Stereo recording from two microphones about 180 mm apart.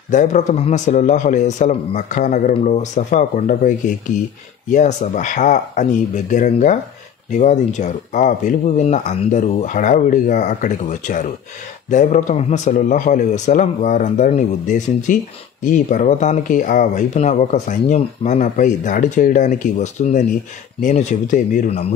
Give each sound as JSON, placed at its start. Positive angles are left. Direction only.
{"t": 0.1, "sound": "speech", "side_deg": 45}